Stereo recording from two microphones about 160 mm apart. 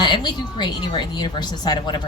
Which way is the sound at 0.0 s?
30° left (ahead or behind).